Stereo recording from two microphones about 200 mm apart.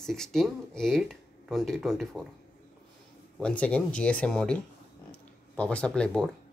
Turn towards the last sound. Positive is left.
turn(degrees=5)  # may be behind; listen again after turning